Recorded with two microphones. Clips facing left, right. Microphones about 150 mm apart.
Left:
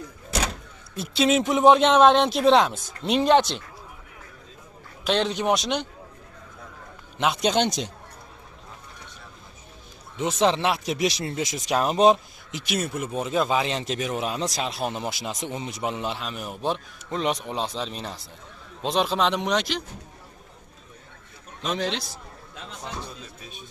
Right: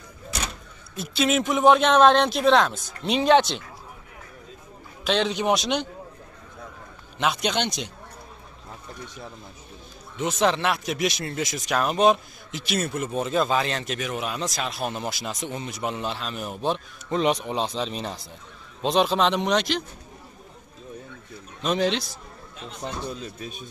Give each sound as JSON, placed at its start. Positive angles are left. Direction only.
{"t": 0.9, "sound": "speech", "side_deg": 30}
{"t": 2.5, "sound": "speech", "side_deg": 10}
{"t": 5.0, "sound": "speech", "side_deg": 0}
{"t": 7.4, "sound": "speech", "side_deg": 40}
{"t": 10.1, "sound": "speech", "side_deg": 25}
{"t": 12.4, "sound": "a man's voice", "side_deg": 15}
{"t": 13.7, "sound": "a man's voice", "side_deg": 30}
{"t": 21.6, "sound": "a man's voice", "side_deg": -5}